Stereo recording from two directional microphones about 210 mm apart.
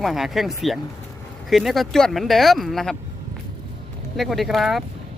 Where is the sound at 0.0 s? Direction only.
Centre (ahead or behind).